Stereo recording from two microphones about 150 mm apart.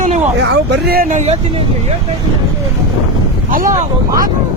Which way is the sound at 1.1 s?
45° right (ahead or behind).